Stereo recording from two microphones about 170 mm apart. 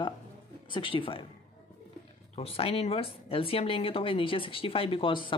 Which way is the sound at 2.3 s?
35° left (ahead or behind).